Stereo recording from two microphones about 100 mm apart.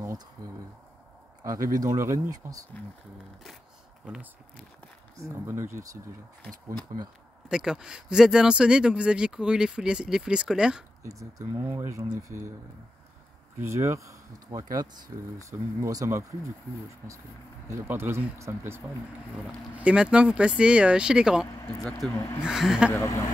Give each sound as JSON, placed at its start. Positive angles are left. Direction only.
{"t": 0.4, "sound": "speech", "side_deg": -40}
{"t": 4.0, "sound": "speech", "side_deg": -10}
{"t": 5.3, "sound": "speech", "side_deg": -25}
{"t": 7.4, "sound": "speech", "side_deg": -5}
{"t": 11.1, "sound": "speech", "side_deg": -35}
{"t": 13.6, "sound": "speech", "side_deg": -25}
{"t": 17.6, "sound": "speech", "side_deg": -25}
{"t": 19.7, "sound": "speech", "side_deg": -10}
{"t": 22.1, "sound": "speech", "side_deg": 30}
{"t": 22.4, "sound": "speech", "side_deg": -5}
{"t": 22.8, "sound": "speech", "side_deg": 30}